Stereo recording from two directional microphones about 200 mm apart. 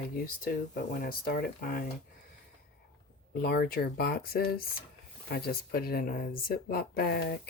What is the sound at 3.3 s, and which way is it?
Speech, 50° left (ahead or behind).